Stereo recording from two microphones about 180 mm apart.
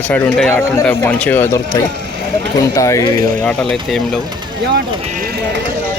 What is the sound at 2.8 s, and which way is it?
Speech, 15° left (ahead or behind).